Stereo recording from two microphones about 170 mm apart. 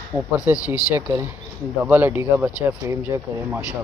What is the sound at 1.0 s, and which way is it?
Speech, 20° right (ahead or behind).